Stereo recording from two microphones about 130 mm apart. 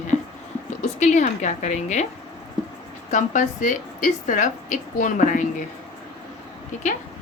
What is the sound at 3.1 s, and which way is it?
A woman's voice, 70° left (ahead or behind).